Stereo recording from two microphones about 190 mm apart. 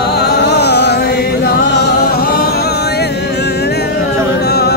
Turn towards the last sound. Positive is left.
turn(degrees=60)  # may be behind; listen again after turning